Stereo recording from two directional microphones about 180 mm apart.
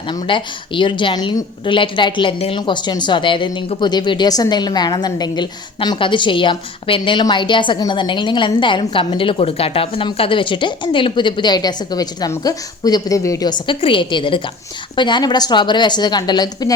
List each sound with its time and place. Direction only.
0.1 s a woman's voice: 25° left (ahead or behind)